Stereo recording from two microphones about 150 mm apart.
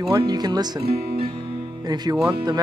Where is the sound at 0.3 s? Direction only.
25° right (ahead or behind).